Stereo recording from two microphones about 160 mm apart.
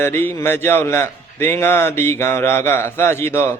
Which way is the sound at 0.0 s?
15° left (ahead or behind).